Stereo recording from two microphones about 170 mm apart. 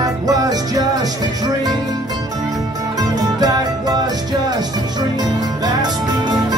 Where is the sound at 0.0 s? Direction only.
20° right (ahead or behind).